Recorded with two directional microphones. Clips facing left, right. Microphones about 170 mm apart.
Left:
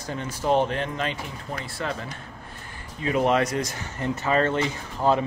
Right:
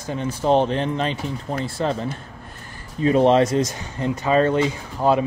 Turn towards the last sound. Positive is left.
turn(degrees=-15)  # may be behind; listen again after turning